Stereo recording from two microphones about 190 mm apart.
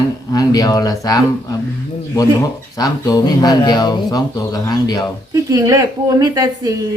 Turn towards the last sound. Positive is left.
turn(degrees=-20)  # may be behind; listen again after turning